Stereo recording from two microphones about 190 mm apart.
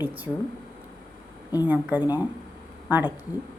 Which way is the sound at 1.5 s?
20° left (ahead or behind).